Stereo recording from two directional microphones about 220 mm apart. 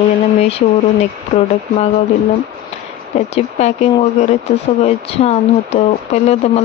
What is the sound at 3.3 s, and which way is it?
Speech, 30° left (ahead or behind).